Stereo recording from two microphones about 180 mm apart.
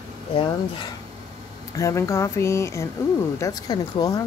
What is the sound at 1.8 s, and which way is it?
Speech, 15° left (ahead or behind).